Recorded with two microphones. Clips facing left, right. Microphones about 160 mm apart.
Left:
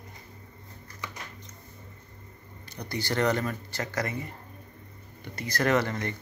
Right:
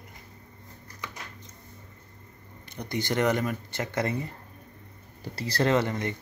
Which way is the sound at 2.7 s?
20° right (ahead or behind).